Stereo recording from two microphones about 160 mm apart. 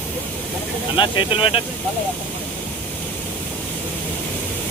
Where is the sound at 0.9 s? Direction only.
30° left (ahead or behind).